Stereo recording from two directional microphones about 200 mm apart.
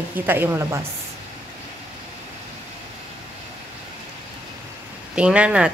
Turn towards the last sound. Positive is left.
turn(degrees=-5)  # may be behind; listen again after turning